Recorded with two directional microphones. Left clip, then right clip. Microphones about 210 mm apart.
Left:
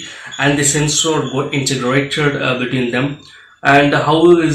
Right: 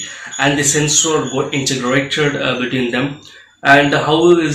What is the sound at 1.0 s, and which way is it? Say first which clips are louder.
Speech: even; 5° left (ahead or behind).